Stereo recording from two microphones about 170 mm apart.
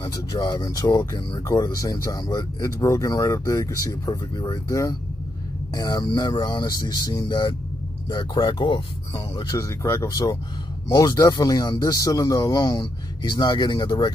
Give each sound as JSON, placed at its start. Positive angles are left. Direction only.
{"t": 0.0, "sound": "speech", "side_deg": 20}